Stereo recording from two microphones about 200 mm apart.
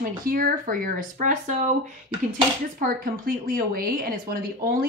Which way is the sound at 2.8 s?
45° right (ahead or behind).